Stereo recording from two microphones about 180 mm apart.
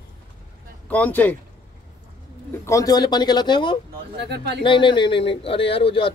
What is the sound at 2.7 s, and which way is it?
Speech, 20° left (ahead or behind).